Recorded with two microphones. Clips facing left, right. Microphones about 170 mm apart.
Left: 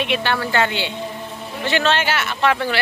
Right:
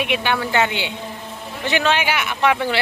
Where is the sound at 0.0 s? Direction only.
10° right (ahead or behind).